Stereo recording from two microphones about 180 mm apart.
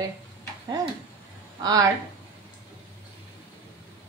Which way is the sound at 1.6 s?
20° right (ahead or behind).